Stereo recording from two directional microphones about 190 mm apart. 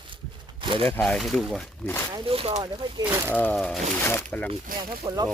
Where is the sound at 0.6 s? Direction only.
25° right (ahead or behind).